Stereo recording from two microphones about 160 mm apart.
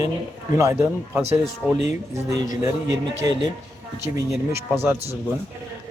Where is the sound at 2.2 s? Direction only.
20° right (ahead or behind).